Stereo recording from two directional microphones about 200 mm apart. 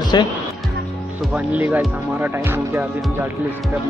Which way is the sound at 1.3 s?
5° right (ahead or behind).